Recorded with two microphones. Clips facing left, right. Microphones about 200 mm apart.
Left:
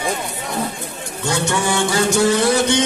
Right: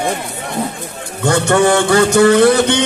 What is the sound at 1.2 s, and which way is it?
Music, 60° right (ahead or behind).